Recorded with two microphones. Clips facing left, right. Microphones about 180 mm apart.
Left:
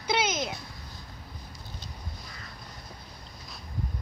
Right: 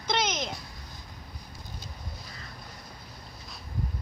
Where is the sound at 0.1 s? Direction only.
10° left (ahead or behind).